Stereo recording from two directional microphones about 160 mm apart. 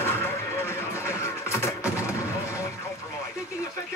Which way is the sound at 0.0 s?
15° left (ahead or behind).